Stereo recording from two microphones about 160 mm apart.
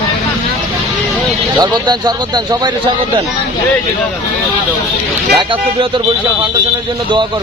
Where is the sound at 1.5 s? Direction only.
25° right (ahead or behind).